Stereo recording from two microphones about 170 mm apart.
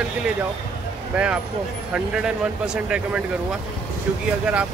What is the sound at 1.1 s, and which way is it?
Speech, 5° right (ahead or behind).